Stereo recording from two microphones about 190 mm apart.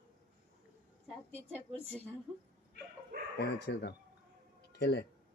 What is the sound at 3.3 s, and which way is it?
Speech, 60° left (ahead or behind).